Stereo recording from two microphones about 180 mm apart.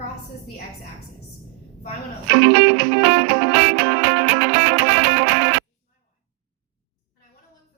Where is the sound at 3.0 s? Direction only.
90° right.